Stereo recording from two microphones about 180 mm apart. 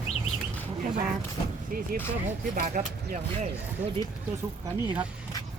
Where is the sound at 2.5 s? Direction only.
45° right (ahead or behind).